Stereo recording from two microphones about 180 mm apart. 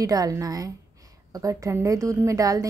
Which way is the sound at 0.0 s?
20° right (ahead or behind).